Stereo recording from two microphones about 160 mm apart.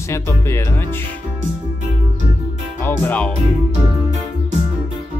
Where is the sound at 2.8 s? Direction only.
10° left (ahead or behind).